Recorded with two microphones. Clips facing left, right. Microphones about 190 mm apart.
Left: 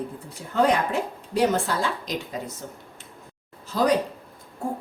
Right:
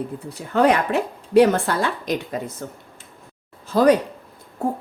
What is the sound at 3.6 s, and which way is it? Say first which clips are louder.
Speech: right 6 dB; 55° right (ahead or behind).